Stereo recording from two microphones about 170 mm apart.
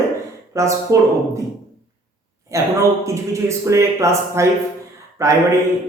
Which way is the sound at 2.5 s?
20° right (ahead or behind).